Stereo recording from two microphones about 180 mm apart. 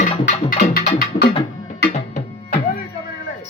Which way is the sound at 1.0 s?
65° left (ahead or behind).